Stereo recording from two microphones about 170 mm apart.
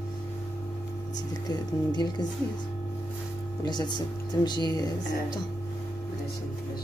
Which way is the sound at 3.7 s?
25° left (ahead or behind).